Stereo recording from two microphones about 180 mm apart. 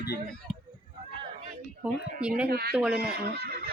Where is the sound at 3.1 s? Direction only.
60° right (ahead or behind).